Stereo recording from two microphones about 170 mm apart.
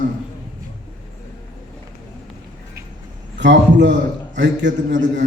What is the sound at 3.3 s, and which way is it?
A man's voice, 90° right.